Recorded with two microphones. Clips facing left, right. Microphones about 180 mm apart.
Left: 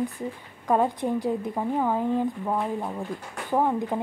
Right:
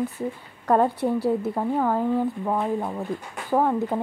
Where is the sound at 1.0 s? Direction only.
10° right (ahead or behind).